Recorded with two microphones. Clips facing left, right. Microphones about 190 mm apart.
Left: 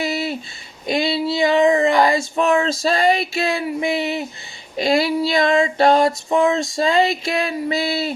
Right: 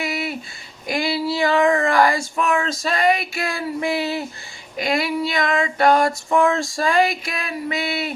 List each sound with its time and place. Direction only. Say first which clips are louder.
0.0 s a sound: left 3 dB; 25° left (ahead or behind)
0.9 s speech: left 2 dB; 25° left (ahead or behind)
4.8 s female singing: left 4 dB; 30° left (ahead or behind)